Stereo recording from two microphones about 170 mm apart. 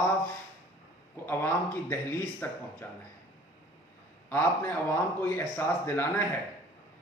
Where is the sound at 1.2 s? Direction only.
10° left (ahead or behind).